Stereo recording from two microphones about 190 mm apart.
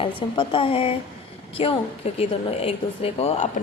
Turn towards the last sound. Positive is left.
turn(degrees=35)  # may be behind; listen again after turning